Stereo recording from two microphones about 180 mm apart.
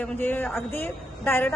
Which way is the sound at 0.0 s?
10° left (ahead or behind).